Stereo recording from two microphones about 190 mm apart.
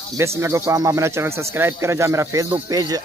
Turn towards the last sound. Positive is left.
turn(degrees=-20)  # may be behind; listen again after turning